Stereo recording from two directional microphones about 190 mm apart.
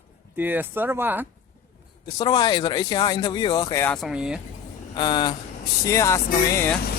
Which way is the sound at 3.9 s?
5° right (ahead or behind).